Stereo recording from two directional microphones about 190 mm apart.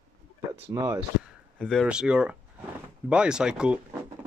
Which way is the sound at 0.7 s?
15° right (ahead or behind).